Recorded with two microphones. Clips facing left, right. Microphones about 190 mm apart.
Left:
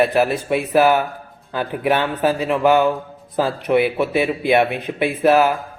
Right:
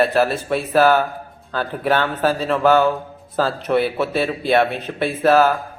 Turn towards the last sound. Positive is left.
turn(degrees=15)  # may be behind; listen again after turning